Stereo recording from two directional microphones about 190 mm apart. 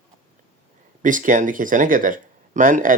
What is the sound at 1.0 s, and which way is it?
Speech, 45° right (ahead or behind).